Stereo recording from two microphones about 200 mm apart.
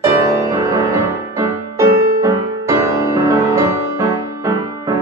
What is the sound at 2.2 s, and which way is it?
Music, 15° right (ahead or behind).